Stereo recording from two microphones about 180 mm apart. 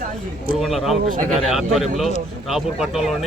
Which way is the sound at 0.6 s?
Centre (ahead or behind).